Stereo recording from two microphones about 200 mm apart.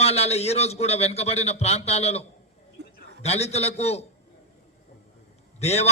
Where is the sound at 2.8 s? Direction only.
60° right (ahead or behind).